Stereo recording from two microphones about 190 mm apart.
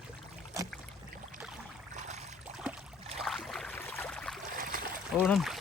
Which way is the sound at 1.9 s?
40° right (ahead or behind).